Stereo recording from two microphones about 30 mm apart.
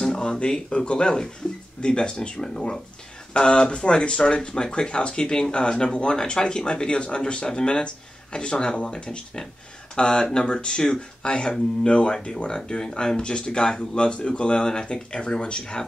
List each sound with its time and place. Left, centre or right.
0.4 s speech: left
3.3 s speech: left
13.9 s speech: left